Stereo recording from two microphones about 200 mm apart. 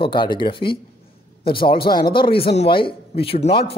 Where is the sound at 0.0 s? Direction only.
25° left (ahead or behind).